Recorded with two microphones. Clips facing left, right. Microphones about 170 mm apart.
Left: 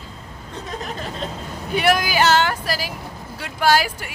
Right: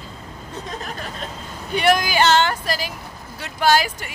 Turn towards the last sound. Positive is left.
turn(degrees=10)  # may be behind; listen again after turning